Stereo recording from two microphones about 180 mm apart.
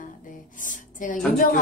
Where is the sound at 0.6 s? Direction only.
45° left (ahead or behind).